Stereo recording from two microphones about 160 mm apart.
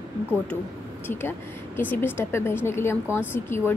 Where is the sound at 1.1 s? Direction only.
15° left (ahead or behind).